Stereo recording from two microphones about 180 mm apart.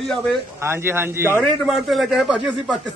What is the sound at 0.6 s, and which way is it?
Speech, 15° right (ahead or behind).